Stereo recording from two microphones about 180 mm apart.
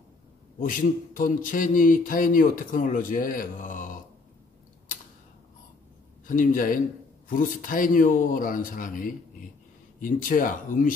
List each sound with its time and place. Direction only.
0.6 s speech: 50° left (ahead or behind)
6.2 s speech: 45° left (ahead or behind)